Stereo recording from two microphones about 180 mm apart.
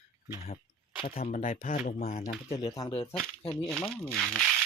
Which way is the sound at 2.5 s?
25° left (ahead or behind).